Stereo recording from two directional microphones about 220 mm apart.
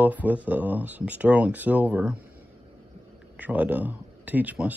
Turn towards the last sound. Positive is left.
turn(degrees=-5)  # may be behind; listen again after turning